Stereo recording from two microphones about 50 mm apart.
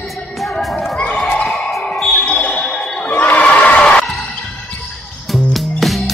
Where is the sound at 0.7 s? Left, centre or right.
Centre.